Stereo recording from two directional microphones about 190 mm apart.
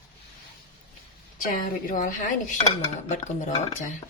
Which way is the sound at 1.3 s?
45° left (ahead or behind).